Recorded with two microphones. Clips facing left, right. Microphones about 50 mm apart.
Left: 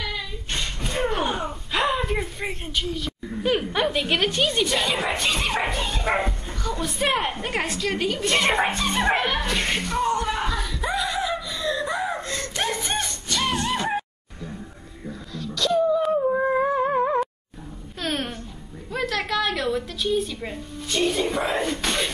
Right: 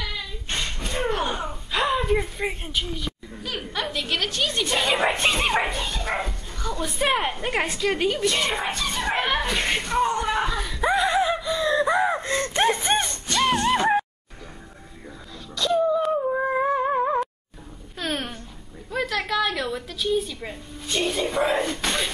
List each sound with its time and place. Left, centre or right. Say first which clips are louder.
0.0 s a sound: left 1 dB; centre
3.4 s a woman's voice: left 7 dB; left
4.7 s speech: right 1 dB; centre
5.0 s speech: right 3 dB; right
5.3 s speech: right 2 dB; centre
5.6 s speech: even; centre
8.6 s speech: left 4 dB; left
9.1 s a sound: even; centre; by 13.0 s right
15.3 s wail: left 2 dB; centre
16.0 s a sound: left 2 dB; centre